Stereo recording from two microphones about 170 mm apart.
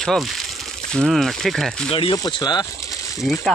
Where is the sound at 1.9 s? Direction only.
30° left (ahead or behind).